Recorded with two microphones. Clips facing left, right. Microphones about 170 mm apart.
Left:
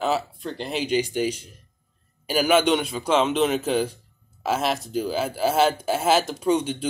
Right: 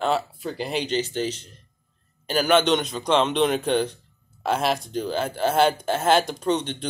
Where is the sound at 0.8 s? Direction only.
10° left (ahead or behind).